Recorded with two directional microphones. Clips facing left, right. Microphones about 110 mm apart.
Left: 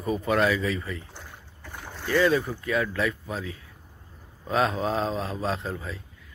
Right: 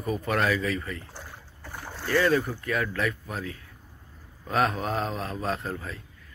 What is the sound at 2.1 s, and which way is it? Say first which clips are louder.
Speech: left 1 dB; 15° left (ahead or behind).